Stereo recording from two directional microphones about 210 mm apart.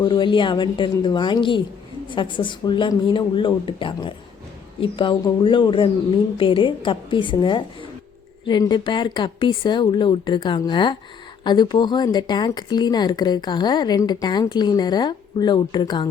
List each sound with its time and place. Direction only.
0.0 s speech: 20° left (ahead or behind)